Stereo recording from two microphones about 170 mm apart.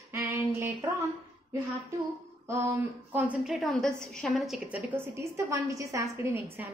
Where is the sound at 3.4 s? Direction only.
Centre (ahead or behind).